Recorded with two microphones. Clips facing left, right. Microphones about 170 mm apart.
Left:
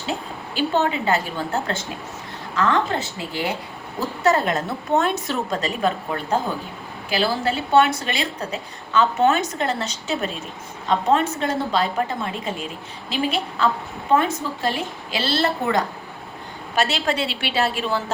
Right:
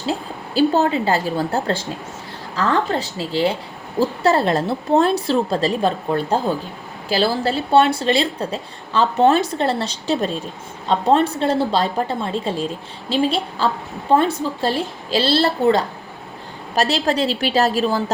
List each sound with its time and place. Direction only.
0.1 s a woman's voice: 35° right (ahead or behind)